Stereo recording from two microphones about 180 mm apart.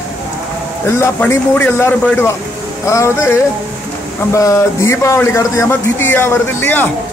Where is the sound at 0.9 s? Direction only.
15° left (ahead or behind).